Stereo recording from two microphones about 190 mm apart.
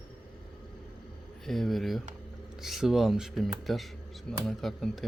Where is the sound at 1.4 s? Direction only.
Centre (ahead or behind).